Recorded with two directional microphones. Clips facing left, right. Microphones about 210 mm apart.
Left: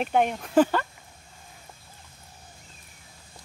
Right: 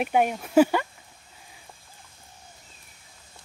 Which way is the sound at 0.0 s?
10° right (ahead or behind).